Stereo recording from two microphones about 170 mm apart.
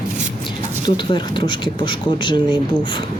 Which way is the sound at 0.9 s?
25° left (ahead or behind).